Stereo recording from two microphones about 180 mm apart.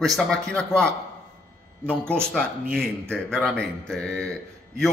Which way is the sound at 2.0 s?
10° right (ahead or behind).